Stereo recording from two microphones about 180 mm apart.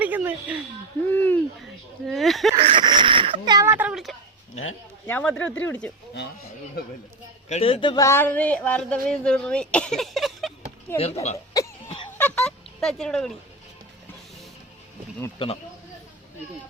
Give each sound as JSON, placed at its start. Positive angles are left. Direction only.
{"t": 0.0, "sound": "speech", "side_deg": -10}
{"t": 1.0, "sound": "a sound", "side_deg": 10}
{"t": 1.6, "sound": "speech", "side_deg": 0}
{"t": 2.6, "sound": "a sound", "side_deg": -30}
{"t": 5.0, "sound": "speech", "side_deg": 10}
{"t": 7.4, "sound": "speech", "side_deg": 35}
{"t": 10.9, "sound": "speech", "side_deg": 35}
{"t": 11.6, "sound": "a sound", "side_deg": 20}
{"t": 12.1, "sound": "speech", "side_deg": 10}
{"t": 15.4, "sound": "speech", "side_deg": 30}